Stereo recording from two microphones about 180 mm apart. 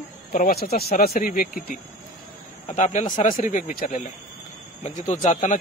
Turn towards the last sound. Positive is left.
turn(degrees=45)  # may be behind; listen again after turning